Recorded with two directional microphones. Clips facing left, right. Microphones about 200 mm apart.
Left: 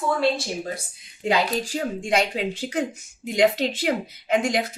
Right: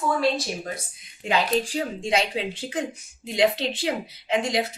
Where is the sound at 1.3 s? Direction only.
40° left (ahead or behind).